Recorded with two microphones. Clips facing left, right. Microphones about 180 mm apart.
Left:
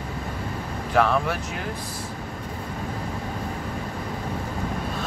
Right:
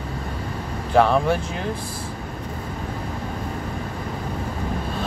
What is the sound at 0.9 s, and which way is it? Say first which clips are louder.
Speech: right 4 dB; 30° right (ahead or behind).